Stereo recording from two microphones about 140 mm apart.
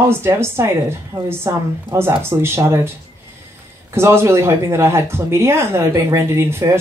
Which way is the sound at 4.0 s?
20° right (ahead or behind).